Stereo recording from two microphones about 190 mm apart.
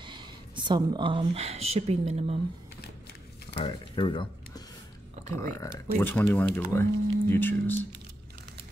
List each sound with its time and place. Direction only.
0.0 s speech: 25° right (ahead or behind)
3.5 s speech: 25° left (ahead or behind)
5.3 s speech: 15° left (ahead or behind)